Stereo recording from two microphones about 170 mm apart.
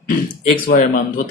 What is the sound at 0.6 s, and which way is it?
Speech, 55° left (ahead or behind).